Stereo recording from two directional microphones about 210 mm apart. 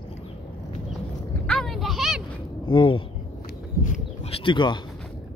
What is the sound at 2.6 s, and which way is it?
Speech, 25° left (ahead or behind).